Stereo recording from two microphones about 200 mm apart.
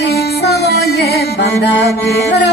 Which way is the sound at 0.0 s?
55° left (ahead or behind).